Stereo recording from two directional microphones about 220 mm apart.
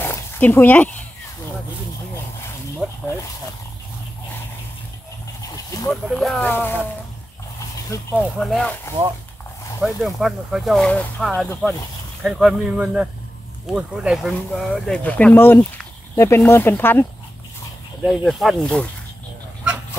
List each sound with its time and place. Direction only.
0.0 s a sound: 10° left (ahead or behind)
2.8 s a sound: 5° right (ahead or behind)
5.9 s speech: centre (ahead or behind)
7.9 s speech: 5° left (ahead or behind)
9.8 s speech: centre (ahead or behind)
18.0 s speech: centre (ahead or behind)